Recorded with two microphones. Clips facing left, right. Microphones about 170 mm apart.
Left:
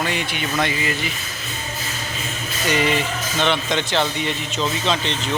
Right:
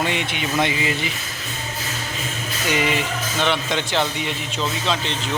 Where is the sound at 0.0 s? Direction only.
20° right (ahead or behind).